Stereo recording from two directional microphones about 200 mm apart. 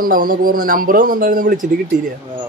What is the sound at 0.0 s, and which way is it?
Speech, 45° right (ahead or behind).